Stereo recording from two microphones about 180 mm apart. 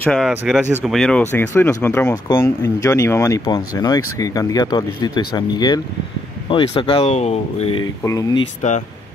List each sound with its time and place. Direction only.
0.0 s speech: 5° left (ahead or behind); by 7.8 s 35° left (ahead or behind)
8.0 s speech: 20° left (ahead or behind)
8.6 s speech: 40° left (ahead or behind)